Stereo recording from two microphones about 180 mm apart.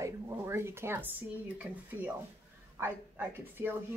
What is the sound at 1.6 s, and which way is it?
Speech, 10° right (ahead or behind).